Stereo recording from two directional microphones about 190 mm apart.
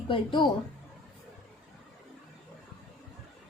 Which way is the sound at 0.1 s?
25° left (ahead or behind).